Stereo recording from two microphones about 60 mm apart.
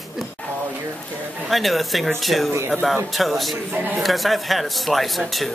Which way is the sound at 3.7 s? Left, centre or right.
Right.